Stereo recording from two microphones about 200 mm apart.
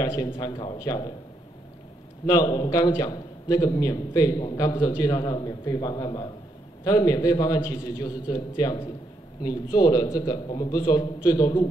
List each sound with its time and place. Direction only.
0.0 s a man's voice: 15° left (ahead or behind)
2.2 s a man's voice: 20° left (ahead or behind)